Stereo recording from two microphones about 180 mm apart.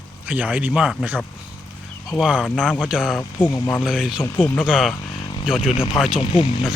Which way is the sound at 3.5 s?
15° left (ahead or behind).